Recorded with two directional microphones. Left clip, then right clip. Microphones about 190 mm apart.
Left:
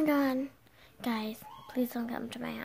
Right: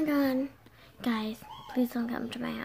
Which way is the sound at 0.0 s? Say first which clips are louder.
Right 1 dB; 35° left (ahead or behind).